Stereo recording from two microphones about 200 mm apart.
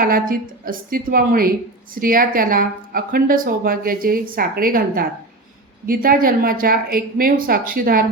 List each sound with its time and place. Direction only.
0.0 s speech: 45° right (ahead or behind)